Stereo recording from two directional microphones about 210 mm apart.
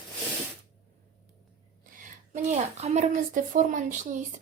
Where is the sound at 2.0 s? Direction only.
35° right (ahead or behind).